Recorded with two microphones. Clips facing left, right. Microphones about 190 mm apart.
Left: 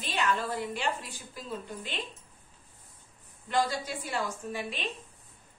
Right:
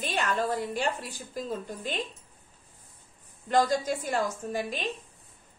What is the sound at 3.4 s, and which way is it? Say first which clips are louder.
A woman's voice: right 5 dB; 45° right (ahead or behind).